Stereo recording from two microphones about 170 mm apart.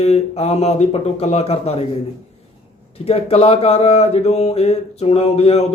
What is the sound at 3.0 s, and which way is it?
Speech, 35° left (ahead or behind).